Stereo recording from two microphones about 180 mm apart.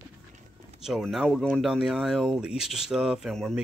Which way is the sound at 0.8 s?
Centre (ahead or behind).